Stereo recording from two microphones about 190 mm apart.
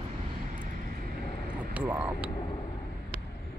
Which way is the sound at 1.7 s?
5° right (ahead or behind).